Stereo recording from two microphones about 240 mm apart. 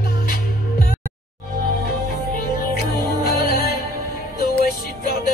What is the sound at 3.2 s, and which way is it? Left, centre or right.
Music, left.